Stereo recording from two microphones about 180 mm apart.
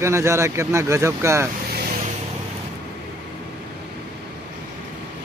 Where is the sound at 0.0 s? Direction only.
15° right (ahead or behind).